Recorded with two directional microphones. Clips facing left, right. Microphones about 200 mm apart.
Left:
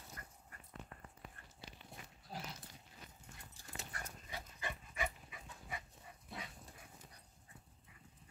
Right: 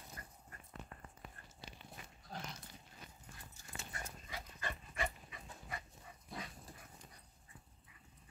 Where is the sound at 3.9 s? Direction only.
25° right (ahead or behind).